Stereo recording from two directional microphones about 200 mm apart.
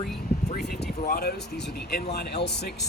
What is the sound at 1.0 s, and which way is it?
Speech, 50° left (ahead or behind).